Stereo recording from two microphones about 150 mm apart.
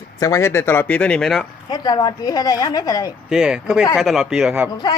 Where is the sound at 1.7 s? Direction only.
25° left (ahead or behind).